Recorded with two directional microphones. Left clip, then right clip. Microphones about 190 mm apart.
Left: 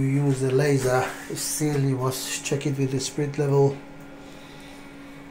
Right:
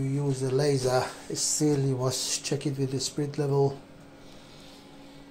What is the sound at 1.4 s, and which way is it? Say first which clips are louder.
Speech: right 1 dB; 40° right (ahead or behind).